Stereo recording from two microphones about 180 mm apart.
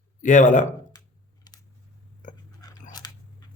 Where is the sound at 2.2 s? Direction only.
45° left (ahead or behind).